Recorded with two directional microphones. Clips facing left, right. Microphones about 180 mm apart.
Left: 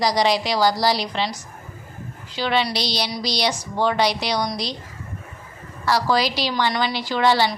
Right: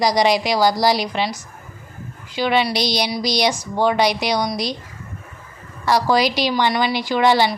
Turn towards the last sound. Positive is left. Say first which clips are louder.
# right 3 dB
turn(degrees=-15)  # may be behind; listen again after turning